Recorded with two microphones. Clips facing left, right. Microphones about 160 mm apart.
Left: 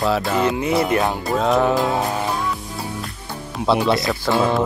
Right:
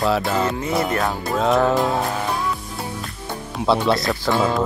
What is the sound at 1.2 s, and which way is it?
Speech, centre (ahead or behind).